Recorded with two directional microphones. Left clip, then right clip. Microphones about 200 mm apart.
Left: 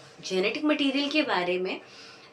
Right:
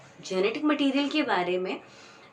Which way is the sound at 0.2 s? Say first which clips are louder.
Even; 15° right (ahead or behind).